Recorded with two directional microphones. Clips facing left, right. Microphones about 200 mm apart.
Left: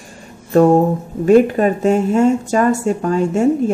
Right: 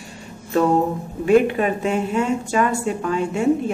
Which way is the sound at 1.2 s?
40° left (ahead or behind).